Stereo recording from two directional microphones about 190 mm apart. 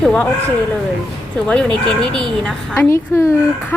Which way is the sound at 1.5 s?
5° left (ahead or behind).